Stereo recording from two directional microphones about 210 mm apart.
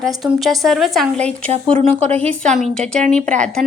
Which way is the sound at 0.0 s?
Centre (ahead or behind).